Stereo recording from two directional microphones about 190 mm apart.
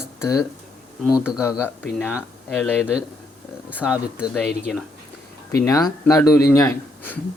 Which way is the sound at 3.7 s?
5° right (ahead or behind).